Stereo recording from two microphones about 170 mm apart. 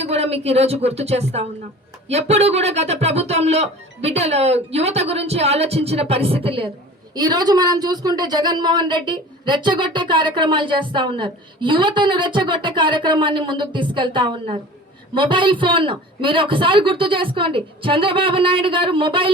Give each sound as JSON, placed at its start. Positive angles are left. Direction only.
{"t": 0.0, "sound": "a woman's voice", "side_deg": -35}